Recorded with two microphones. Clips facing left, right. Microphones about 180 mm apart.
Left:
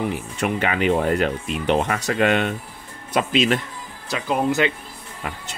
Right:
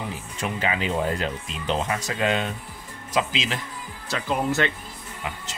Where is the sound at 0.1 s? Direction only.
65° left (ahead or behind).